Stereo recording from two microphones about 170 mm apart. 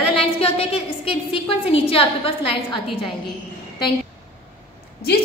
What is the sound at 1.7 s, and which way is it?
A woman's voice, 35° left (ahead or behind).